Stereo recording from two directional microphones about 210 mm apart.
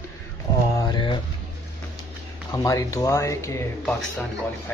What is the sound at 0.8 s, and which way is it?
Speech, 20° left (ahead or behind).